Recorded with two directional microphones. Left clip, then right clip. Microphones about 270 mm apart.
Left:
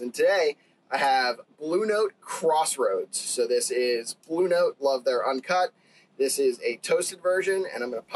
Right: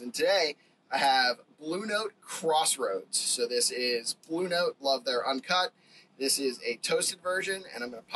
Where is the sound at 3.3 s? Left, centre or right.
Left.